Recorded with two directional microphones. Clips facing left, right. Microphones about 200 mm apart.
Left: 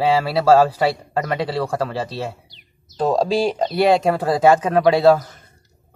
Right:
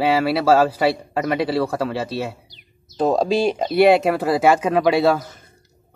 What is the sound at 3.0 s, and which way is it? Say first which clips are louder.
Speech: even; 20° right (ahead or behind).